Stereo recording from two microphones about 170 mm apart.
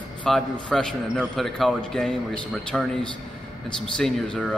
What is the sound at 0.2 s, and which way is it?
A man's voice, 5° left (ahead or behind).